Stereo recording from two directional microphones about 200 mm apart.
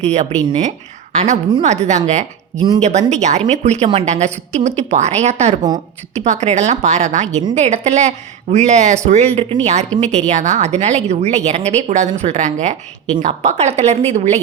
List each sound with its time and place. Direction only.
0.0 s a woman's voice: 30° right (ahead or behind)
2.6 s speech: 20° right (ahead or behind)
2.8 s a woman's voice: 35° right (ahead or behind)